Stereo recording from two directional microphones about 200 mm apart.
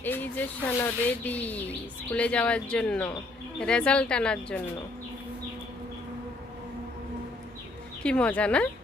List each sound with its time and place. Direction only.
0.0 s speech: 10° left (ahead or behind)
8.0 s speech: 5° left (ahead or behind)